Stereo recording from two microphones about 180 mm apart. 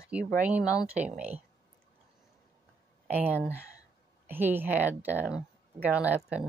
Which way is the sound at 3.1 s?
10° right (ahead or behind).